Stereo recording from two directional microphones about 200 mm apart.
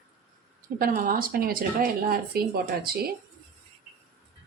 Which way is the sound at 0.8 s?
45° right (ahead or behind).